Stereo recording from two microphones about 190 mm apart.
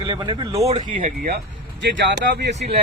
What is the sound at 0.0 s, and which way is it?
Speech, 25° right (ahead or behind).